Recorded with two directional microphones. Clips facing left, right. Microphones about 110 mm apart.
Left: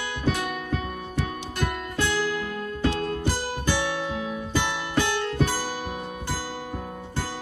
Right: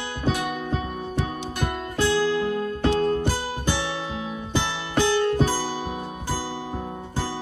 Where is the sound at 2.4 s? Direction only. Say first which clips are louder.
Right 4 dB; 35° right (ahead or behind).